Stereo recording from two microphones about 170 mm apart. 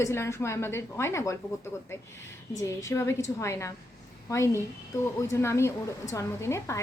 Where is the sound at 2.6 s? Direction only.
20° left (ahead or behind).